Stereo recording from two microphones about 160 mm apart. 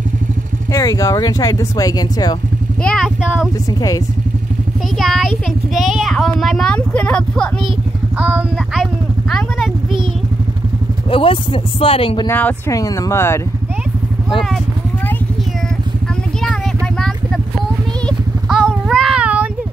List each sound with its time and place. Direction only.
0.7 s speech: 20° left (ahead or behind)
2.8 s speech: 5° left (ahead or behind)
4.9 s speech: centre (ahead or behind)
8.2 s a sound: 10° right (ahead or behind)
11.1 s speech: 35° left (ahead or behind)
12.3 s speech: 10° left (ahead or behind)
18.0 s a sound: 5° right (ahead or behind)